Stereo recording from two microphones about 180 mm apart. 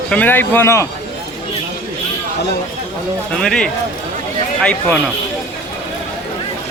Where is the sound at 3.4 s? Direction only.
5° left (ahead or behind).